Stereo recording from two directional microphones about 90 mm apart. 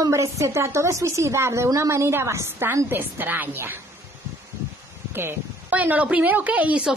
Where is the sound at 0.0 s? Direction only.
35° right (ahead or behind).